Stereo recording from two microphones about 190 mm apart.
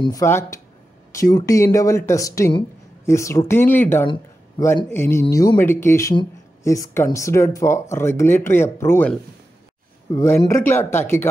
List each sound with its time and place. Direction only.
0.0 s speech: 15° left (ahead or behind)
4.1 s speech: 20° left (ahead or behind)
10.1 s speech: 10° left (ahead or behind)